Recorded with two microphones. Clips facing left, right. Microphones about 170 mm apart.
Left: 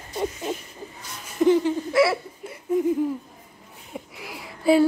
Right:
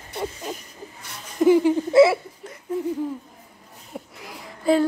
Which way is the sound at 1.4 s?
10° right (ahead or behind).